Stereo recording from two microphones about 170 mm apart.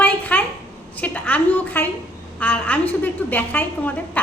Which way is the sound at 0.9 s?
10° left (ahead or behind).